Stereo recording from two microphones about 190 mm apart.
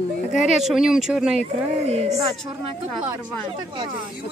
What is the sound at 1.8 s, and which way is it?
Speech, 35° right (ahead or behind).